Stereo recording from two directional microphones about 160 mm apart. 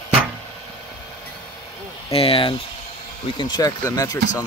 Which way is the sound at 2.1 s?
35° left (ahead or behind).